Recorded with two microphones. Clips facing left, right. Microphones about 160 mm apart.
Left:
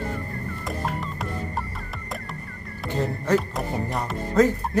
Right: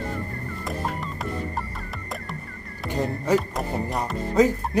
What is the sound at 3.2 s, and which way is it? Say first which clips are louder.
Speech: even; 5° right (ahead or behind).